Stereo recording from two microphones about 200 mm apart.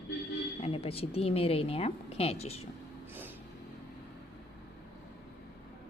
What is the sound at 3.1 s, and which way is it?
Vehicle, 10° right (ahead or behind).